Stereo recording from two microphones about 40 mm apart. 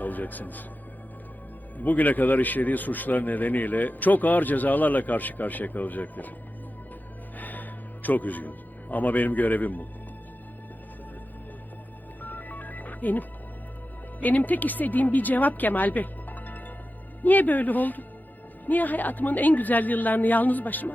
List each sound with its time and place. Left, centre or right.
0.0 s speech: left
1.8 s speech: left
7.3 s music: left
12.2 s music: left
14.2 s speech: left